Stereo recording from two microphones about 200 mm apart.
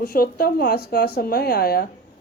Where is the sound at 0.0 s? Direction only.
45° left (ahead or behind).